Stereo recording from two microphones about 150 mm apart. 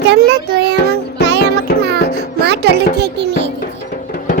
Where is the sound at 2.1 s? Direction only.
90° right.